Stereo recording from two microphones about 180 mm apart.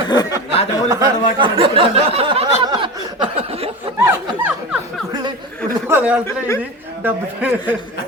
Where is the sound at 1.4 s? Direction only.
30° right (ahead or behind).